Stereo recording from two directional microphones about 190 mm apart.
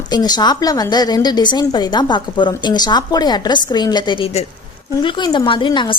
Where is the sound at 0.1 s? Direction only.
20° left (ahead or behind).